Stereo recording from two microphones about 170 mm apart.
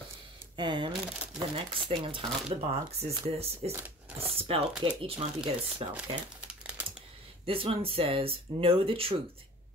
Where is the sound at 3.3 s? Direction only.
35° right (ahead or behind).